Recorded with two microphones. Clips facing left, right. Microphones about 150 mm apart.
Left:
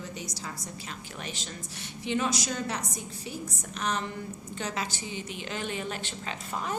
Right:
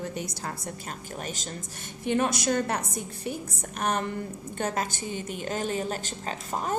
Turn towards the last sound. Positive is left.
turn(degrees=-45)  # may be behind; listen again after turning